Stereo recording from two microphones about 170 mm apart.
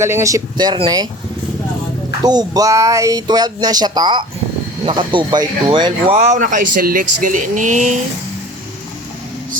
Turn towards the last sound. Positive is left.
turn(degrees=-45)  # may be behind; listen again after turning